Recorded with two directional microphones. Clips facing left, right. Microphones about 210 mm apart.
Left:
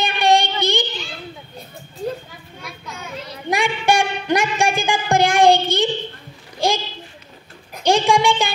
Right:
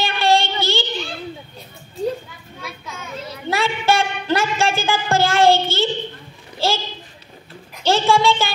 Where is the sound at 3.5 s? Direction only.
15° left (ahead or behind).